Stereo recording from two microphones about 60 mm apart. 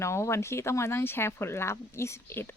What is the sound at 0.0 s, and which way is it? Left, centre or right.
Speech, left.